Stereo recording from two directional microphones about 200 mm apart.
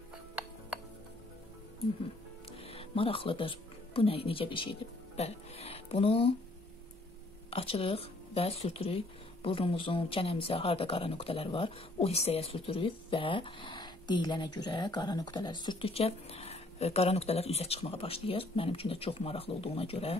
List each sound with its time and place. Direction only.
2.6 s speech: 30° left (ahead or behind)
7.5 s speech: 30° left (ahead or behind)